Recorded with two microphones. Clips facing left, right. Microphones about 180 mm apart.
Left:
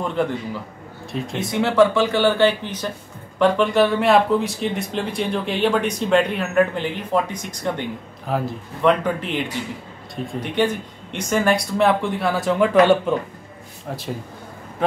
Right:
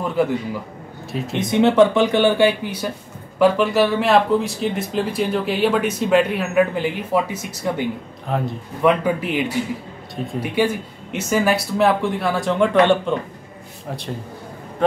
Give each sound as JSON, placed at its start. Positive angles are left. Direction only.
{"t": 0.0, "sound": "speech", "side_deg": -5}
{"t": 1.3, "sound": "speech", "side_deg": -20}
{"t": 8.8, "sound": "speech", "side_deg": -10}